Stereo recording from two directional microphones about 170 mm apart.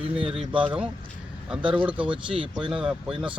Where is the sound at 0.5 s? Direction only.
30° right (ahead or behind).